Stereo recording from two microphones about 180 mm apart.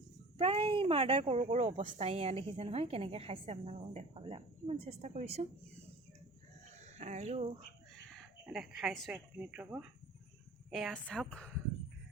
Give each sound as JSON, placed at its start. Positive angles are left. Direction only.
{"t": 0.3, "sound": "speech", "side_deg": -35}
{"t": 6.7, "sound": "cricket", "side_deg": -40}
{"t": 8.2, "sound": "speech", "side_deg": 0}